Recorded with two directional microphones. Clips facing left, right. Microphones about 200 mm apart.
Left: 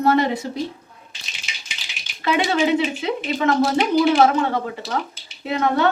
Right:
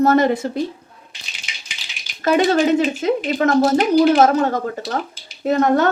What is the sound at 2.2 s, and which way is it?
A woman's voice, 45° right (ahead or behind).